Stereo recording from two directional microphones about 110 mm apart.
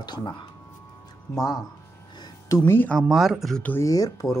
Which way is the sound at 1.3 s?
35° left (ahead or behind).